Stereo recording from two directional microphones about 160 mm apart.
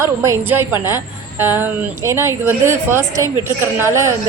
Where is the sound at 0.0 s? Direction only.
15° right (ahead or behind).